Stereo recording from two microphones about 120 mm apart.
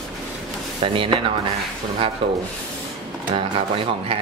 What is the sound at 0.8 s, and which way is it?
Speech, 45° right (ahead or behind).